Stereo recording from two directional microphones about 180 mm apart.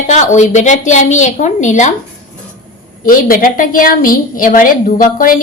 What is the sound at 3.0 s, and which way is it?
A woman's voice, 50° left (ahead or behind).